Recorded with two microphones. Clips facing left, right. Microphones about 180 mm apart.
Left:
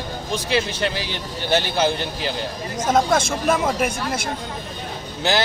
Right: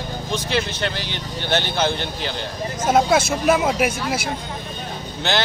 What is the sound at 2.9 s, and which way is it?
Speech, 5° right (ahead or behind).